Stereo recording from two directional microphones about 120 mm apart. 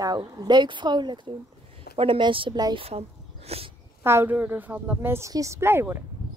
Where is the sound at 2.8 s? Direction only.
55° right (ahead or behind).